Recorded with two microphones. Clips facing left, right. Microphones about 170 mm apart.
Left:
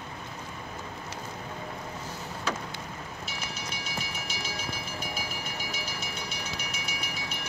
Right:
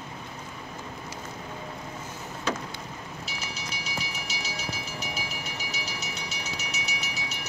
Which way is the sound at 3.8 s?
50° left (ahead or behind).